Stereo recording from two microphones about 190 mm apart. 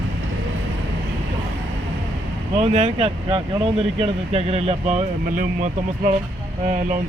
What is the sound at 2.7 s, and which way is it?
Speech, 35° right (ahead or behind).